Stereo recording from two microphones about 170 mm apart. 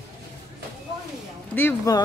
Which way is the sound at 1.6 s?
10° left (ahead or behind).